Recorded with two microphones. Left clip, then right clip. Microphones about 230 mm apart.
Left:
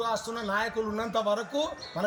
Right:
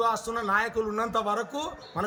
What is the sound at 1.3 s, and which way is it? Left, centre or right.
Speech, right.